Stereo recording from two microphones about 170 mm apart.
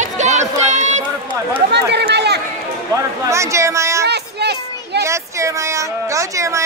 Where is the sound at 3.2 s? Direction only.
15° right (ahead or behind).